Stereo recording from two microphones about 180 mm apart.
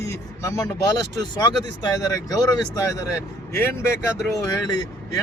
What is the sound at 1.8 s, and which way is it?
Speech, 20° left (ahead or behind).